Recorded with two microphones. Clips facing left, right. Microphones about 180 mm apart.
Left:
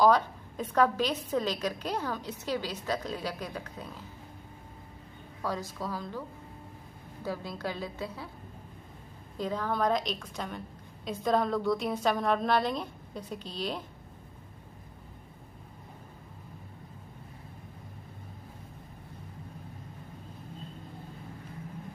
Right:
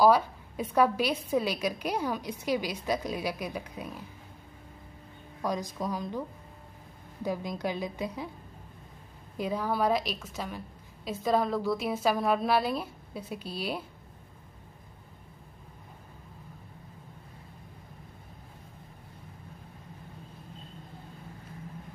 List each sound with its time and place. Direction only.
0.0 s a woman's voice: 10° right (ahead or behind)
5.4 s a woman's voice: 15° right (ahead or behind)
7.2 s a woman's voice: 15° right (ahead or behind)
9.4 s a woman's voice: 10° right (ahead or behind)